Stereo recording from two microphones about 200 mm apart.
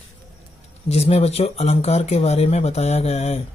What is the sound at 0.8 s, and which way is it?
Speech, 30° left (ahead or behind).